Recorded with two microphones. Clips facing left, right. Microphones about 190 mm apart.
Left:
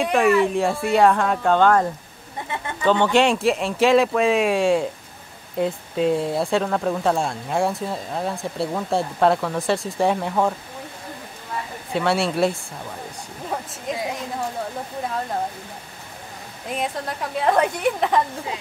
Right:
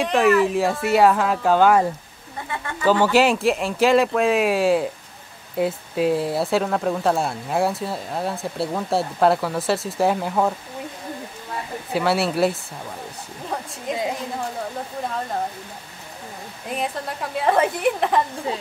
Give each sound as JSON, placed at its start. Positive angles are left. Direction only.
{"t": 0.0, "sound": "speech", "side_deg": 0}
{"t": 11.9, "sound": "speech", "side_deg": 0}
{"t": 13.9, "sound": "speech", "side_deg": 0}
{"t": 16.7, "sound": "speech", "side_deg": 0}